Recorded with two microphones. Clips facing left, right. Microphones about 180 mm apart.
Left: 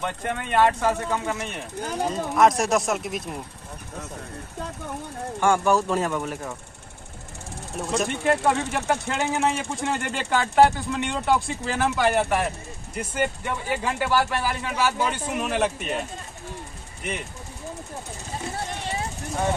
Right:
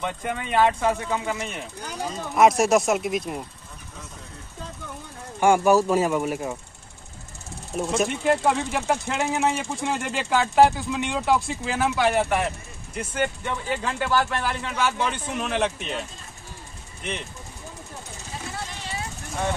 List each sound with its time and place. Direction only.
0.0 s speech: centre (ahead or behind)
1.8 s speech: 50° left (ahead or behind)
2.3 s speech: 5° right (ahead or behind)
5.4 s speech: 10° right (ahead or behind)
7.9 s speech: centre (ahead or behind)